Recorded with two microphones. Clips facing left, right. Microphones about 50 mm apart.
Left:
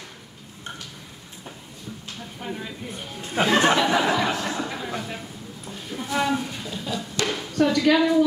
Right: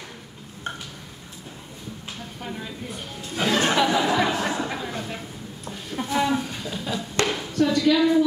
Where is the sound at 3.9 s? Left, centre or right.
Left.